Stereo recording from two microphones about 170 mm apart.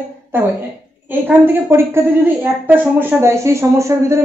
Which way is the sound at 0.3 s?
10° right (ahead or behind).